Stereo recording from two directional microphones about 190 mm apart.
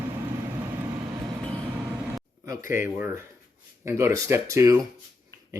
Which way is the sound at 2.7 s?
10° right (ahead or behind).